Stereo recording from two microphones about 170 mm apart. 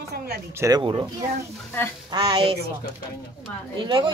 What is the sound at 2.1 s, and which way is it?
Speech, 25° right (ahead or behind).